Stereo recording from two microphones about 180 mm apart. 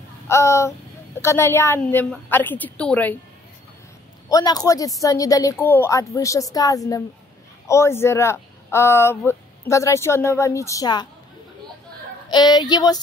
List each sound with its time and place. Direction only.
0.3 s speech: 15° left (ahead or behind)
4.3 s a woman's voice: 20° left (ahead or behind)
12.3 s a woman's voice: 25° left (ahead or behind)